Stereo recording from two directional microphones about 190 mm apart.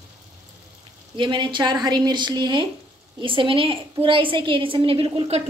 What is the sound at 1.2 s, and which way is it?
A woman's voice, 25° right (ahead or behind).